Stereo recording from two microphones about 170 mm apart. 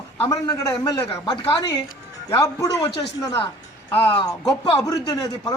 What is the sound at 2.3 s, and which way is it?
Speech, 20° left (ahead or behind).